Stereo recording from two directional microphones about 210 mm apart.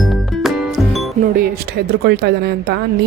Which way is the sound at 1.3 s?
45° right (ahead or behind).